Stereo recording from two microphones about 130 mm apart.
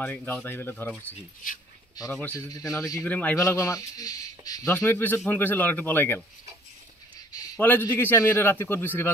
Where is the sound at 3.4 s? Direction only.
25° left (ahead or behind).